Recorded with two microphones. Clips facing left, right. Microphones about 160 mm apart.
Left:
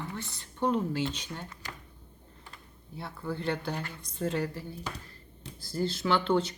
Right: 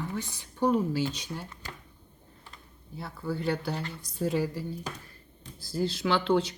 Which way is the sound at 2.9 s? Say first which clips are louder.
Right 2 dB; centre (ahead or behind).